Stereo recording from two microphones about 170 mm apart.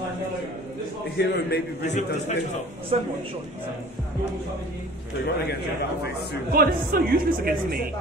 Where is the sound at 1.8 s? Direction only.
45° left (ahead or behind).